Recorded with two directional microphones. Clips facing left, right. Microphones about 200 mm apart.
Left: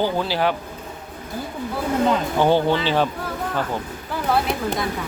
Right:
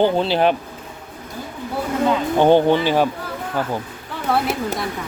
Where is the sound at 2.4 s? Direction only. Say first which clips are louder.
Right 5 dB; 20° right (ahead or behind).